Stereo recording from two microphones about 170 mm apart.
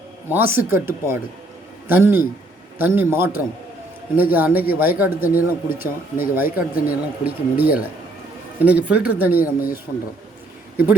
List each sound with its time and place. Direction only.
0.3 s speech: 10° right (ahead or behind)
9.4 s speech: 60° left (ahead or behind)